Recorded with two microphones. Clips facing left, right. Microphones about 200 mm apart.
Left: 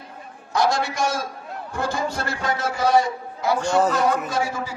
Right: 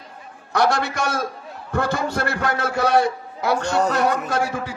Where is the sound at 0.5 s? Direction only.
65° right (ahead or behind).